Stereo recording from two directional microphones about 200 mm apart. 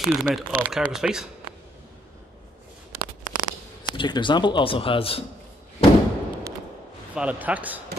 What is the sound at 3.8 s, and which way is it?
Speech, 20° left (ahead or behind).